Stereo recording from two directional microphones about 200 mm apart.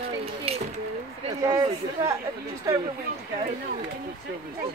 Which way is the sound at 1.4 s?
15° right (ahead or behind).